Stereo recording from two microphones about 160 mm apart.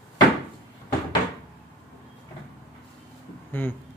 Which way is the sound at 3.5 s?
10° left (ahead or behind).